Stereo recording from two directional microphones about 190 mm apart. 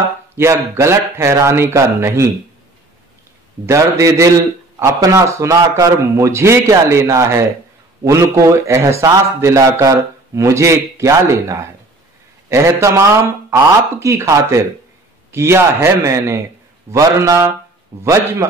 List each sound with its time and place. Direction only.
0.4 s a man's voice: 15° right (ahead or behind)
3.6 s a man's voice: 15° right (ahead or behind)
12.8 s a man's voice: 15° right (ahead or behind)